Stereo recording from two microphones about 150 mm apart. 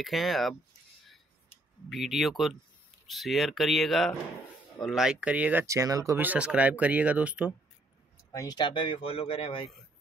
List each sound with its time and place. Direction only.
0.0 s speech: centre (ahead or behind)
1.9 s speech: centre (ahead or behind)
8.3 s speech: 25° left (ahead or behind)